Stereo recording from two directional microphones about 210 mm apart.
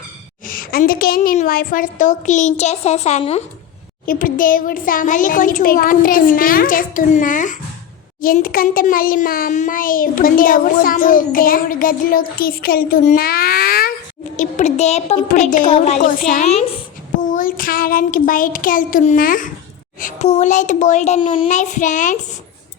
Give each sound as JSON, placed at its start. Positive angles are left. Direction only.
{"t": 0.4, "sound": "a child's voice", "side_deg": 45}
{"t": 4.0, "sound": "a child's voice", "side_deg": 40}
{"t": 14.3, "sound": "a child's voice", "side_deg": 35}